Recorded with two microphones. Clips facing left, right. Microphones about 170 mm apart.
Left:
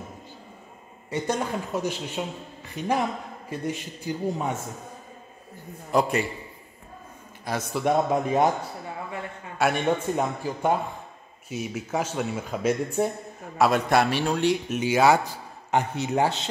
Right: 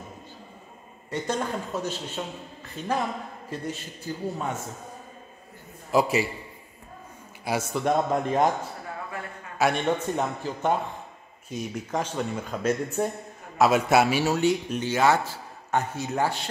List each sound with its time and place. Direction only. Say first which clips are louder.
1.1 s speech: left 1 dB; 10° left (ahead or behind)
5.9 s a man's voice: even; 5° right (ahead or behind)
7.4 s a man's voice: right 1 dB; 5° right (ahead or behind)
7.8 s speech: left 3 dB; 5° left (ahead or behind)
9.6 s speech: left 1 dB; 5° left (ahead or behind)
13.6 s a man's voice: right 1 dB; 5° right (ahead or behind)
14.8 s speech: left 4 dB; 10° left (ahead or behind)